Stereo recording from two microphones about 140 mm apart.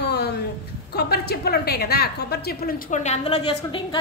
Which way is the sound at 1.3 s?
90° left.